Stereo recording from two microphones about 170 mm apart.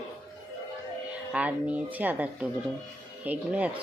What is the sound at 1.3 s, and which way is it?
Speech, 10° right (ahead or behind).